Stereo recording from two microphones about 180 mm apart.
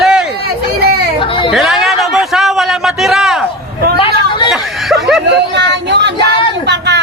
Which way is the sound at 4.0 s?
30° left (ahead or behind).